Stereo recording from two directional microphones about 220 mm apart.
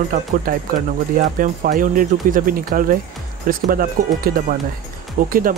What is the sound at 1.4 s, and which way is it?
Speech, 40° right (ahead or behind).